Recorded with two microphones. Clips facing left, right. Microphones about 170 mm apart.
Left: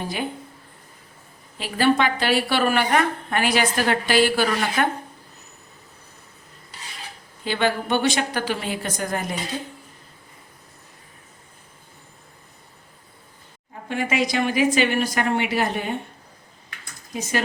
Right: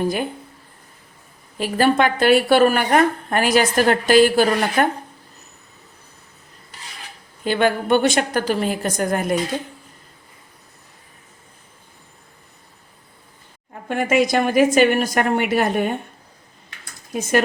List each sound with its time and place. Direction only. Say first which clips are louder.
0.0 s speech: right 6 dB; 50° right (ahead or behind)
1.5 s speech: right 3 dB; 45° right (ahead or behind)
7.4 s speech: right 4 dB; 50° right (ahead or behind)
13.8 s speech: right 5 dB; 50° right (ahead or behind)
17.1 s speech: right 7 dB; 55° right (ahead or behind)